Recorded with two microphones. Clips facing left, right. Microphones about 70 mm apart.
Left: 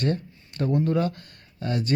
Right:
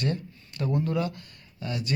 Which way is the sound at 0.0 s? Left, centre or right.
Left.